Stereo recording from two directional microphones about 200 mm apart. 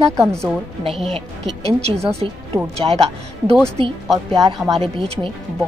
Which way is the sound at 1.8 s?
30° right (ahead or behind).